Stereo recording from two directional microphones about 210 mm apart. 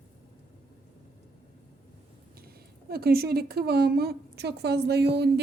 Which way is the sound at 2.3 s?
45° right (ahead or behind).